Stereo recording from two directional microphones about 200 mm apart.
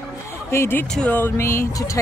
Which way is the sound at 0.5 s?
10° left (ahead or behind).